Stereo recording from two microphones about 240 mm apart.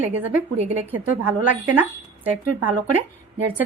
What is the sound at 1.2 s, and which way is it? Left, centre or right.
Speech, right.